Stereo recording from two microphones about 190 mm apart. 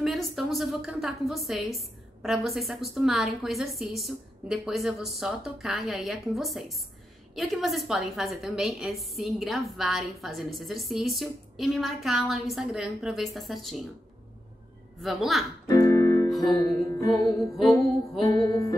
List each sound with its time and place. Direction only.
0.0 s a woman's voice: centre (ahead or behind)
15.0 s a woman's voice: centre (ahead or behind)
15.9 s music: 20° left (ahead or behind)
17.6 s a woman's voice: centre (ahead or behind)
18.2 s music: 20° left (ahead or behind)